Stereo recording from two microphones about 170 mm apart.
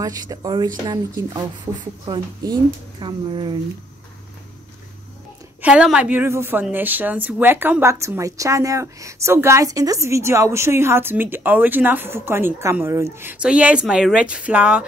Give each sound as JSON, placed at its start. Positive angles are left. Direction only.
{"t": 0.0, "sound": "speech", "side_deg": -20}
{"t": 3.0, "sound": "speech", "side_deg": -30}
{"t": 5.6, "sound": "a woman's voice", "side_deg": -5}